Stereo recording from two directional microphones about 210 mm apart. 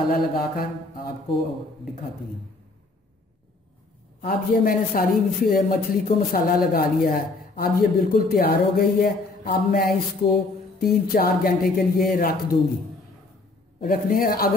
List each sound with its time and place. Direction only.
0.1 s a man's voice: 45° left (ahead or behind)
4.2 s a man's voice: 45° left (ahead or behind)
10.2 s music: 25° left (ahead or behind)
10.8 s a man's voice: 45° left (ahead or behind)
13.8 s a man's voice: 45° left (ahead or behind)